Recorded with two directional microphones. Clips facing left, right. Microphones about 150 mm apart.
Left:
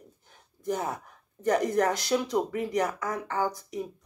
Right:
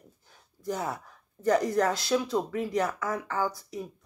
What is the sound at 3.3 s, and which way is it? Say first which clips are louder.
Speech: left 2 dB; 45° left (ahead or behind).